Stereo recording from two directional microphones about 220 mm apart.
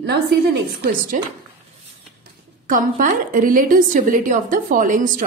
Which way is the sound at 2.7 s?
35° right (ahead or behind).